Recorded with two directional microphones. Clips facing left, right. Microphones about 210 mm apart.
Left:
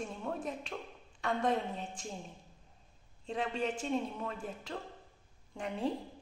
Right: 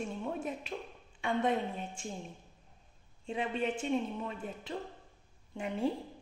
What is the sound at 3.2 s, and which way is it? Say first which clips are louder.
A man's voice: right 1 dB; 5° right (ahead or behind).